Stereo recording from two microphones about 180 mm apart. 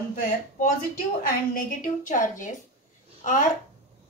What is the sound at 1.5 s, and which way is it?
A woman's voice, 50° left (ahead or behind).